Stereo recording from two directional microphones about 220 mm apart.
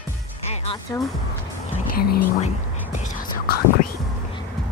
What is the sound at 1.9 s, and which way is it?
Whispering, 45° left (ahead or behind).